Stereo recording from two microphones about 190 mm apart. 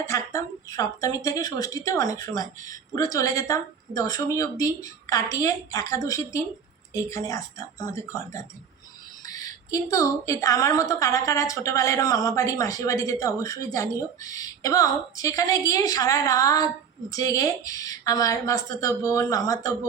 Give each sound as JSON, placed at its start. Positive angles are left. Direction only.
{"t": 0.1, "sound": "a woman's voice", "side_deg": 15}